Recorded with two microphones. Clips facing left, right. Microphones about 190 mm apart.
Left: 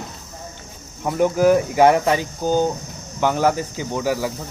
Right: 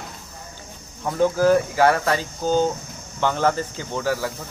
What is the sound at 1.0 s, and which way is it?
Speech, 15° left (ahead or behind).